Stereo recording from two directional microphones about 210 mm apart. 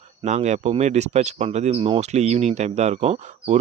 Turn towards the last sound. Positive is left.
turn(degrees=-30)  # may be behind; listen again after turning